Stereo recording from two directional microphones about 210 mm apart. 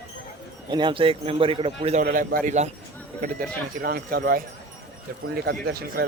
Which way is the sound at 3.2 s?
45° right (ahead or behind).